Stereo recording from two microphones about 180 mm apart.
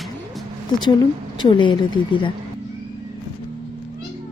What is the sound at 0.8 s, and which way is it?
Speech, 25° left (ahead or behind).